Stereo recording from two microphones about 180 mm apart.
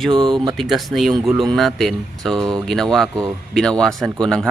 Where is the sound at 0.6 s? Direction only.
Centre (ahead or behind).